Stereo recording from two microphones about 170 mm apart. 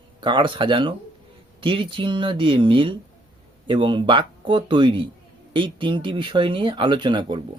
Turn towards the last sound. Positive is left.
turn(degrees=-25)  # may be behind; listen again after turning